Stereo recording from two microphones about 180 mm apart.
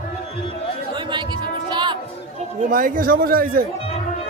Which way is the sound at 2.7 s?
50° right (ahead or behind).